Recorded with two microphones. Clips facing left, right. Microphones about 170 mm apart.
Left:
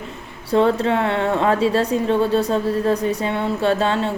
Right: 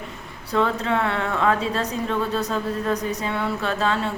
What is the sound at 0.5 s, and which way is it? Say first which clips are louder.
Speech: left 5 dB; 30° left (ahead or behind).